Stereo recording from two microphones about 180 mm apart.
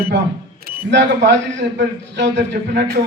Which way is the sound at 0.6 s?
80° right.